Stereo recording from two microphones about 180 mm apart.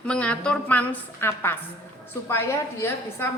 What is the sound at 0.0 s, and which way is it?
A woman's voice, 5° left (ahead or behind).